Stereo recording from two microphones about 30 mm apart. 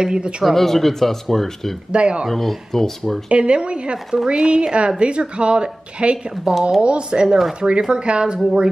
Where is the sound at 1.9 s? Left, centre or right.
Right.